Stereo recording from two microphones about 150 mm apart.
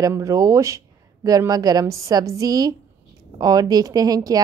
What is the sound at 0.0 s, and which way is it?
Speech, 20° right (ahead or behind).